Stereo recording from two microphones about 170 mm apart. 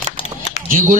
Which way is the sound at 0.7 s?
50° right (ahead or behind).